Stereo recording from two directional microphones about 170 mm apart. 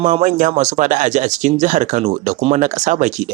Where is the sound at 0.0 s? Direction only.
45° right (ahead or behind).